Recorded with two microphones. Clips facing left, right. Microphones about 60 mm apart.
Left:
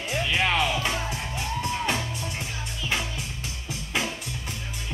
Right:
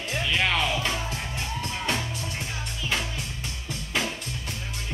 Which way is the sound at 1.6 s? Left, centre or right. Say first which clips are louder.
Left 2 dB; left.